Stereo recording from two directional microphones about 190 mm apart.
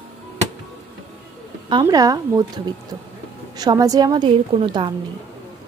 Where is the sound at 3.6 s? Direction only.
20° right (ahead or behind).